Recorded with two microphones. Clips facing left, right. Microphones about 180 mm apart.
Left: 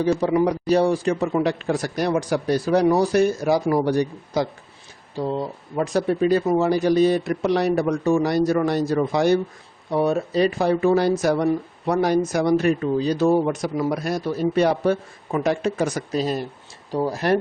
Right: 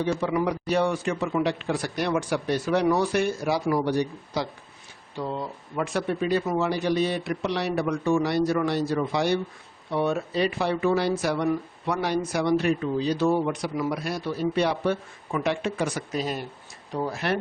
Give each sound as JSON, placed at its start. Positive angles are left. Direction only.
{"t": 0.0, "sound": "a man's voice", "side_deg": 40}
{"t": 5.1, "sound": "a man's voice", "side_deg": 35}